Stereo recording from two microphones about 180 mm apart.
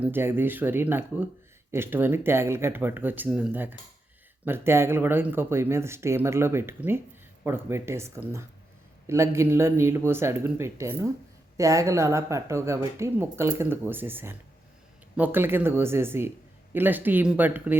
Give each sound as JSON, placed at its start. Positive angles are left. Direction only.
{"t": 0.0, "sound": "a woman's voice", "side_deg": -10}